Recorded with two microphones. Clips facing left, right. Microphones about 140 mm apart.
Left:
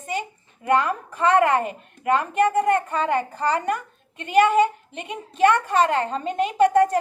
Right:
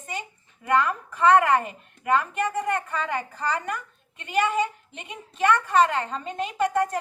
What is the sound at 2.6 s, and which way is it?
Speech, 45° left (ahead or behind).